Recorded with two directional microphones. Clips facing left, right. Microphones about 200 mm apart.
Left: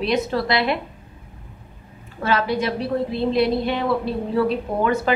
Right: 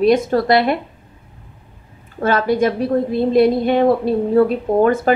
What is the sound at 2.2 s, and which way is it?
A woman's voice, 50° right (ahead or behind).